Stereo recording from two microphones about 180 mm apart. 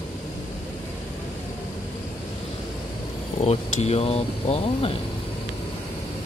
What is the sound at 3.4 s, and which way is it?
Speech, 35° left (ahead or behind).